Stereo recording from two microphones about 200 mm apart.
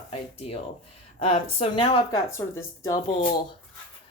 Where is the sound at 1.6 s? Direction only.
25° left (ahead or behind).